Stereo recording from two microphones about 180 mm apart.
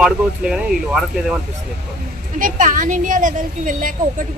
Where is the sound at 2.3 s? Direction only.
45° right (ahead or behind).